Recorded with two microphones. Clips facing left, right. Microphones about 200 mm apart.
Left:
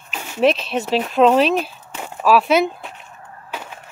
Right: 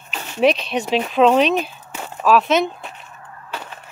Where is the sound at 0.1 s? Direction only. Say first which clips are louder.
Even; 5° left (ahead or behind).